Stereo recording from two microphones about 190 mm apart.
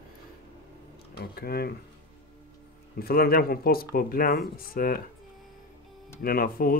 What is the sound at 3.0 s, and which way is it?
Speech, 55° left (ahead or behind).